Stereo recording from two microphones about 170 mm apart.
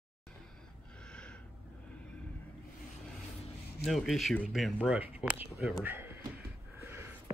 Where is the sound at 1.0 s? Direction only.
5° left (ahead or behind).